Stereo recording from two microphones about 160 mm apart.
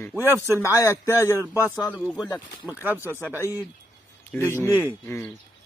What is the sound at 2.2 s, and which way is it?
Speech, 25° left (ahead or behind).